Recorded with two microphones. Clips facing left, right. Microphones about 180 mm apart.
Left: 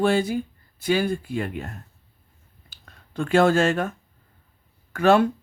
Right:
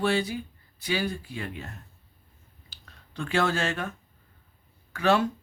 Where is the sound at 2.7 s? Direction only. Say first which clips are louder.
Left 8 dB; 50° left (ahead or behind).